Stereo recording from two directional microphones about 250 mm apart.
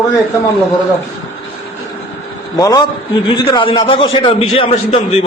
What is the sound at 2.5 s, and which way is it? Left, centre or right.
A man's voice, centre.